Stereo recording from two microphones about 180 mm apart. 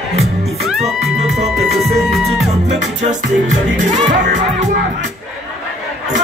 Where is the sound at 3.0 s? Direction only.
45° right (ahead or behind).